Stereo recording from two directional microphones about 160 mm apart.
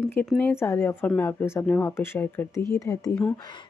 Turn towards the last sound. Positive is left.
turn(degrees=20)  # may be behind; listen again after turning